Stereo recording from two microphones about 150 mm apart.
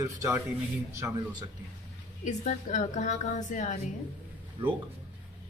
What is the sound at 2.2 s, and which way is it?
A woman's voice, 55° left (ahead or behind).